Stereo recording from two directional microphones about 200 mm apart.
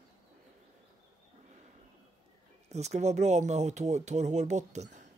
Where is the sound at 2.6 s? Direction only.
35° right (ahead or behind).